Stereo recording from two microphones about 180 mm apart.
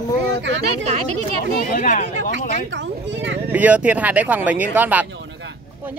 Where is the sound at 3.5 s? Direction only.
10° right (ahead or behind).